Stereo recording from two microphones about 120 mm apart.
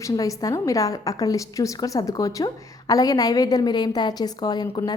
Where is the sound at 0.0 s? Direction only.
30° left (ahead or behind).